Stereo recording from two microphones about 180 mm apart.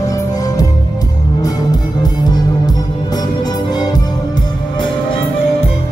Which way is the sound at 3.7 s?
20° left (ahead or behind).